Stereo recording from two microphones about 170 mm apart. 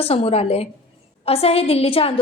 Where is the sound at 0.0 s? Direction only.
35° left (ahead or behind).